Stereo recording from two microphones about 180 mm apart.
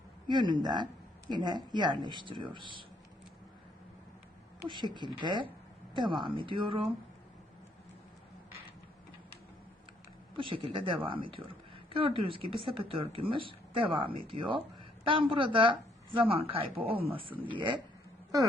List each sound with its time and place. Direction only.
0.3 s speech: 25° right (ahead or behind)
4.9 s speech: 25° right (ahead or behind)
10.3 s speech: 30° right (ahead or behind)